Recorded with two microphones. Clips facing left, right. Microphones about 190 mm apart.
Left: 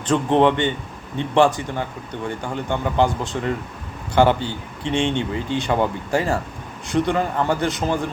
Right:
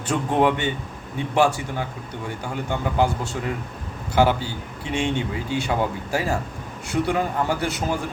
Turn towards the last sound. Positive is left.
turn(degrees=-10)  # may be behind; listen again after turning